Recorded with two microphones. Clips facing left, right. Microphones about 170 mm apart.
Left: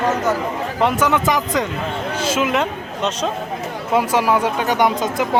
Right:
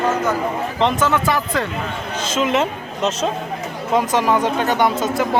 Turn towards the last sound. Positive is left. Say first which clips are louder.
# even
turn(degrees=15)  # may be behind; listen again after turning